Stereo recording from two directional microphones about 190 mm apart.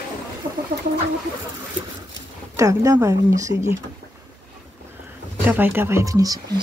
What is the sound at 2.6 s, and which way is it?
Speech, 15° right (ahead or behind).